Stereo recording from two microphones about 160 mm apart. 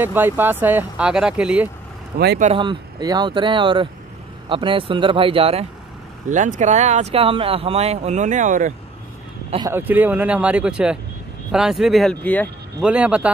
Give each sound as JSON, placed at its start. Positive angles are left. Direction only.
{"t": 0.0, "sound": "speech", "side_deg": -10}
{"t": 2.1, "sound": "speech", "side_deg": -80}
{"t": 2.5, "sound": "speech", "side_deg": -30}
{"t": 6.2, "sound": "speech", "side_deg": -50}
{"t": 9.7, "sound": "speech", "side_deg": -10}
{"t": 12.8, "sound": "speech", "side_deg": -5}